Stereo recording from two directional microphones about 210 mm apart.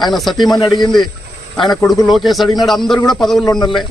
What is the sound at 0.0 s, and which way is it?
Speech, centre (ahead or behind).